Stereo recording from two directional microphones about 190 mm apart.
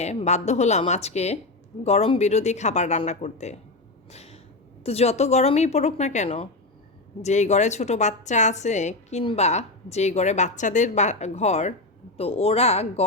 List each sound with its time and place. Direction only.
0.0 s a woman's voice: 35° left (ahead or behind)
4.1 s a sound: 35° left (ahead or behind)
4.8 s a woman's voice: 30° left (ahead or behind)